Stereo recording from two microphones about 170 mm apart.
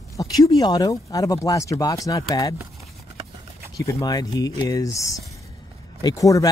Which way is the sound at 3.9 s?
20° left (ahead or behind).